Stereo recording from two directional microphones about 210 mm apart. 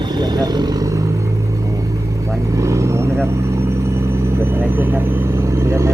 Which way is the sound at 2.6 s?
15° right (ahead or behind).